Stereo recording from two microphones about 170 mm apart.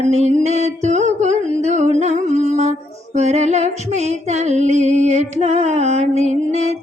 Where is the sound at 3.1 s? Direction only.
40° right (ahead or behind).